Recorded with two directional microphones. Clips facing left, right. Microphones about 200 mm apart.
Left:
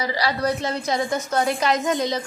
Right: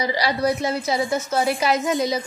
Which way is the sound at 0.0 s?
15° right (ahead or behind).